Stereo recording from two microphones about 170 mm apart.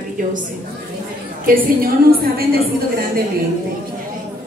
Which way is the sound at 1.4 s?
60° right (ahead or behind).